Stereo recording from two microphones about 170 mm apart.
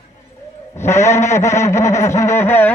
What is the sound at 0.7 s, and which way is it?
A man's voice, 15° left (ahead or behind).